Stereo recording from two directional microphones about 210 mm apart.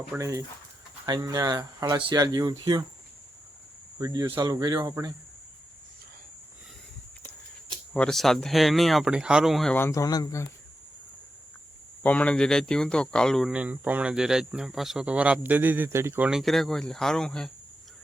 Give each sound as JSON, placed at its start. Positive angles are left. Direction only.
{"t": 0.2, "sound": "speech", "side_deg": -15}
{"t": 3.9, "sound": "speech", "side_deg": -15}
{"t": 7.9, "sound": "speech", "side_deg": 5}
{"t": 12.0, "sound": "speech", "side_deg": 5}